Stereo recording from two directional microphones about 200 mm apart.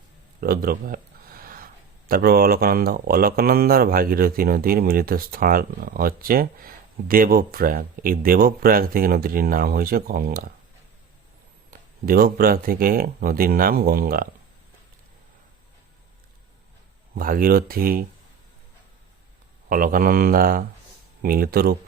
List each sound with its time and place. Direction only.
0.3 s speech: 50° right (ahead or behind)
11.7 s speech: 45° right (ahead or behind)
17.2 s speech: 45° right (ahead or behind)
19.6 s speech: 45° right (ahead or behind)